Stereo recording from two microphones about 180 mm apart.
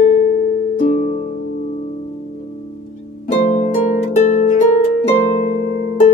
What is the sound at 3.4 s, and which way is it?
Harp, 40° left (ahead or behind).